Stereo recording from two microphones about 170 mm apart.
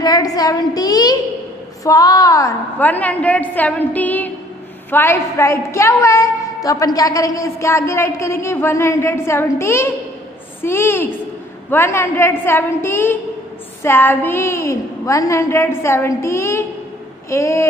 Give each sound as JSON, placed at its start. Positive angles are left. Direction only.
{"t": 0.0, "sound": "a woman's voice", "side_deg": 20}